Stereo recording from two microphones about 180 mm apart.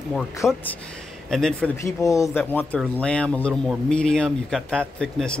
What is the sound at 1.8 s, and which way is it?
Speech, 15° left (ahead or behind).